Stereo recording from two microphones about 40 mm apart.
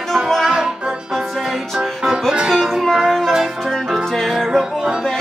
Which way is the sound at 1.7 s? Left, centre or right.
Centre.